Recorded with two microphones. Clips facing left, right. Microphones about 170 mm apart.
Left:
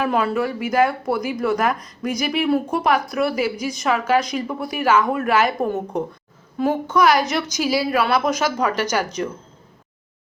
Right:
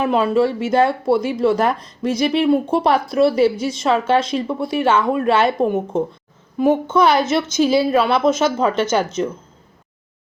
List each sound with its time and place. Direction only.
0.0 s speech: 20° right (ahead or behind)